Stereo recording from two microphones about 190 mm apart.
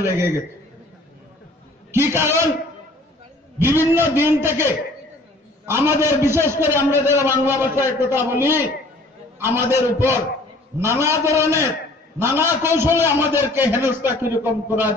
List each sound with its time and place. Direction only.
1.9 s a man's voice: 15° right (ahead or behind)
3.5 s a man's voice: 10° right (ahead or behind)